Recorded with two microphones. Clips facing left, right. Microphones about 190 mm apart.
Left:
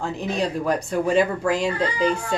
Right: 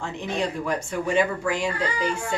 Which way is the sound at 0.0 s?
35° left (ahead or behind).